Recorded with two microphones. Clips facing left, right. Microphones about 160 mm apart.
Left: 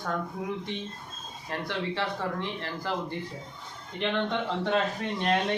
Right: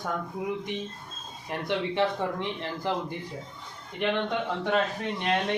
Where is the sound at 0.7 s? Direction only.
15° right (ahead or behind).